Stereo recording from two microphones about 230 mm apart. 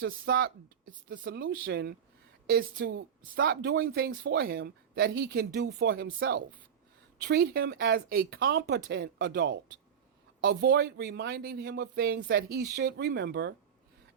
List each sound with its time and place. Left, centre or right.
0.0 s speech: right